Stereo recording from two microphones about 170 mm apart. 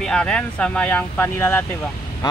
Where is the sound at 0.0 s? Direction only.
5° left (ahead or behind).